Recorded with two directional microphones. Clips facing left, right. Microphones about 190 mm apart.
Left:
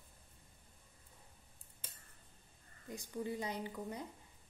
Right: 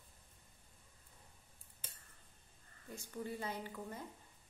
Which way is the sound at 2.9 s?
15° left (ahead or behind).